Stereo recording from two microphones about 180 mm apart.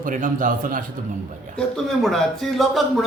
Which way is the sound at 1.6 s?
Centre (ahead or behind).